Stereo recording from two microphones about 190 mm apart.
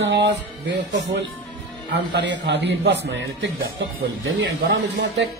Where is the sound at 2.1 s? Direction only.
65° right (ahead or behind).